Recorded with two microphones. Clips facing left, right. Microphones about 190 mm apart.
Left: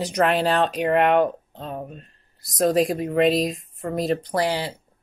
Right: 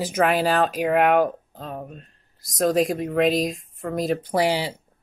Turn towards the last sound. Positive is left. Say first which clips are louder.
# right 2 dB
turn(degrees=-10)  # may be behind; listen again after turning